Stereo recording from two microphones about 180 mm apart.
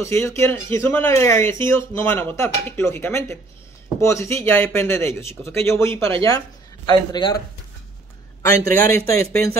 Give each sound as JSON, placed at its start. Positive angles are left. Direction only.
{"t": 0.0, "sound": "speech", "side_deg": 15}
{"t": 6.9, "sound": "a man's voice", "side_deg": 25}